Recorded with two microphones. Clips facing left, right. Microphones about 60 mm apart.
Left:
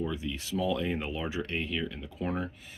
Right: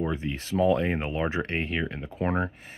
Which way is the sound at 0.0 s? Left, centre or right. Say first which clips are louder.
Right 4 dB; right.